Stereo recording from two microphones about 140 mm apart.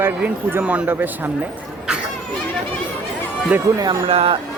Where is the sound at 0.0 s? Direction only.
15° right (ahead or behind).